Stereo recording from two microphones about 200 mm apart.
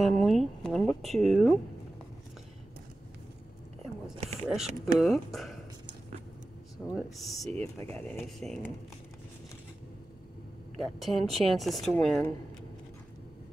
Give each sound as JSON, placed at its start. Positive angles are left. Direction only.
{"t": 0.0, "sound": "speech", "side_deg": 0}
{"t": 4.2, "sound": "a sound", "side_deg": -30}
{"t": 4.9, "sound": "speech", "side_deg": 0}
{"t": 7.0, "sound": "speech", "side_deg": 0}
{"t": 7.6, "sound": "speech", "side_deg": 15}
{"t": 8.4, "sound": "speech", "side_deg": 0}
{"t": 10.8, "sound": "speech", "side_deg": 0}